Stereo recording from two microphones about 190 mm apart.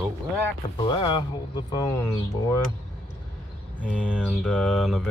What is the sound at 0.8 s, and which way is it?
Speech, 25° left (ahead or behind).